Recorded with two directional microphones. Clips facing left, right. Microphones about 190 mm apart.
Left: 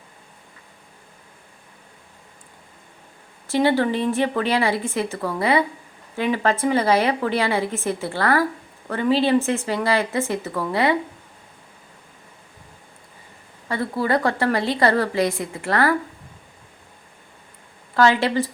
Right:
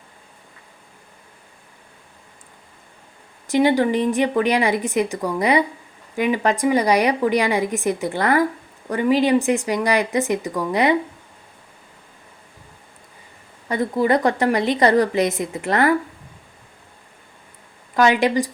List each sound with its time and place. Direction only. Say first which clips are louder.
3.4 s a woman's voice: right 2 dB; 15° right (ahead or behind)
13.7 s a woman's voice: right 4 dB; 20° right (ahead or behind)
17.9 s a woman's voice: right 1 dB; 15° right (ahead or behind)